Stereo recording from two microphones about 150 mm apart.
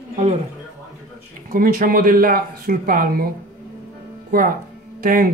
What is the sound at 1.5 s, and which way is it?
Speech, 75° right (ahead or behind).